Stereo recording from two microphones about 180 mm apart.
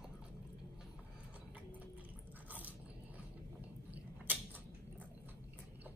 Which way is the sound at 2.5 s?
10° right (ahead or behind).